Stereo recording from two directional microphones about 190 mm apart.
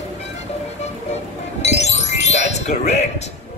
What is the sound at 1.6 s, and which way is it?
Music, 35° left (ahead or behind).